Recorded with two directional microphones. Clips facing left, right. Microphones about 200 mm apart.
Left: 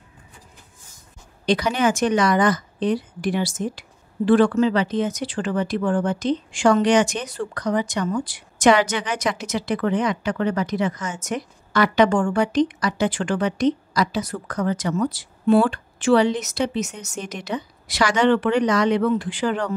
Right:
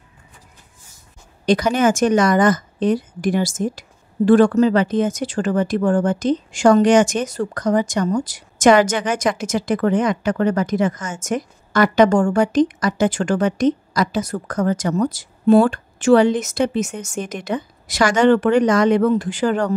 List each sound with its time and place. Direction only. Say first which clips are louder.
1.4 s speech: right 4 dB; 45° right (ahead or behind)